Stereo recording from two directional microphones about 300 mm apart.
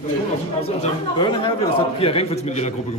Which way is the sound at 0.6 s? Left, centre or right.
Centre.